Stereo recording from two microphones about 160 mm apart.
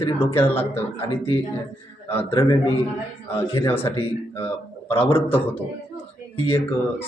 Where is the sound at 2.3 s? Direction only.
35° left (ahead or behind).